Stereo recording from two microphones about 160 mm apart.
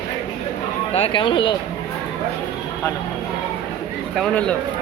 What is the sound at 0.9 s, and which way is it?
Speech, 35° left (ahead or behind).